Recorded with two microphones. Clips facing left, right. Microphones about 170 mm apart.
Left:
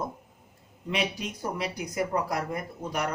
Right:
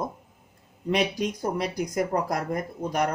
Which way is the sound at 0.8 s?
40° right (ahead or behind).